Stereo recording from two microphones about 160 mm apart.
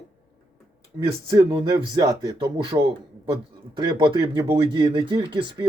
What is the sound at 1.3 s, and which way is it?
Speech, 20° right (ahead or behind).